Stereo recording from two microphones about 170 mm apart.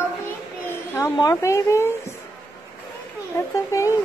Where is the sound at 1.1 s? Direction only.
20° left (ahead or behind).